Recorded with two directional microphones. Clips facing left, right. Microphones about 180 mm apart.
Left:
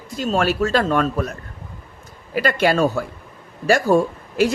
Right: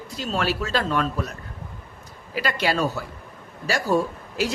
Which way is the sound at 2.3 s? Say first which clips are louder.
Left 6 dB; 50° left (ahead or behind).